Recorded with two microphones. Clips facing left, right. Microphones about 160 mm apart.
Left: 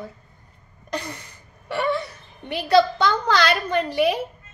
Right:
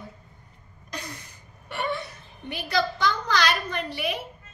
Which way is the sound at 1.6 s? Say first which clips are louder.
Left 6 dB; 80° left.